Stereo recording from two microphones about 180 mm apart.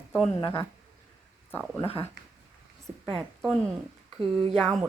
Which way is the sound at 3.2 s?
Centre (ahead or behind).